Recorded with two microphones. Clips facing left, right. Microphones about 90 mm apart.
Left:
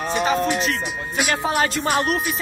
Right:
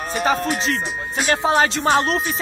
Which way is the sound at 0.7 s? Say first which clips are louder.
Right 1 dB; 35° right (ahead or behind).